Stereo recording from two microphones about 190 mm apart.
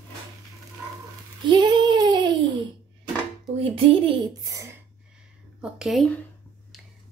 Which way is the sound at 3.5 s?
30° right (ahead or behind).